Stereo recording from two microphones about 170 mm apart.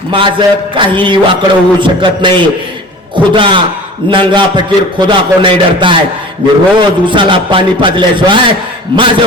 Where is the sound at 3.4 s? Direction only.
30° right (ahead or behind).